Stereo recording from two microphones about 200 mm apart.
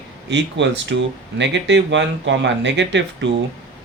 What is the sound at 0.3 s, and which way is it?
Speech, 65° right (ahead or behind).